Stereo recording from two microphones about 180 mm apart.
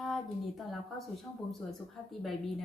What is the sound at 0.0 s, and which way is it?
A woman's voice, centre (ahead or behind).